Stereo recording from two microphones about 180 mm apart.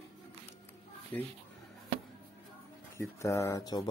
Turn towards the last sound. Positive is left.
turn(degrees=20)  # may be behind; listen again after turning